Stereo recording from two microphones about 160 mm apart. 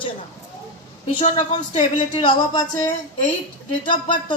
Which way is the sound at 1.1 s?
45° left (ahead or behind).